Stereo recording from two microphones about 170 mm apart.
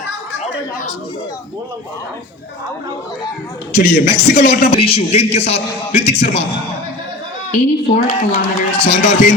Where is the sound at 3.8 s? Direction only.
55° left (ahead or behind).